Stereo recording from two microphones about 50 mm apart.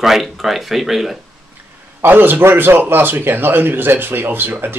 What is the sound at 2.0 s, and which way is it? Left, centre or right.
A man's voice, right.